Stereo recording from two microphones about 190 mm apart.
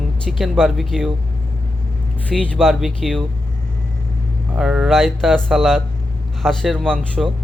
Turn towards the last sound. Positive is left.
turn(degrees=0)  # may be behind; listen again after turning